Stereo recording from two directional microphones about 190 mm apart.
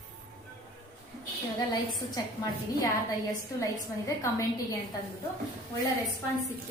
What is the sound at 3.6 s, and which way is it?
Speech, 15° left (ahead or behind).